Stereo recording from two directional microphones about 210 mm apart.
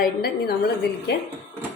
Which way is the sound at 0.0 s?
45° left (ahead or behind).